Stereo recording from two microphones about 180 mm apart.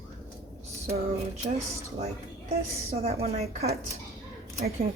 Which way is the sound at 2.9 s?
35° right (ahead or behind).